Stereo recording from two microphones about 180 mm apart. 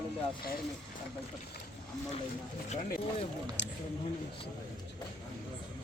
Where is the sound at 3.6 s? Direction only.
80° left.